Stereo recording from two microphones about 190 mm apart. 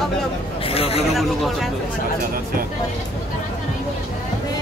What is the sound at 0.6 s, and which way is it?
Speech, 30° left (ahead or behind).